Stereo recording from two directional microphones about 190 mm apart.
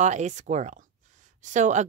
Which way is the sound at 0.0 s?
40° right (ahead or behind).